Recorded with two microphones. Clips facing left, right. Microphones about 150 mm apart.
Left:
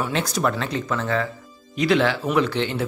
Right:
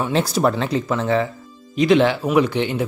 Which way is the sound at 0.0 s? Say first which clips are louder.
Right 5 dB; 30° right (ahead or behind).